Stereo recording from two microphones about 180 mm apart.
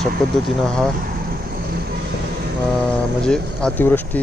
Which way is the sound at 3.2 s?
5° left (ahead or behind).